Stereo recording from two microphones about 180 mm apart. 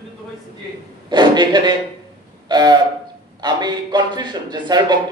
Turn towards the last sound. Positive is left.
turn(degrees=-25)  # may be behind; listen again after turning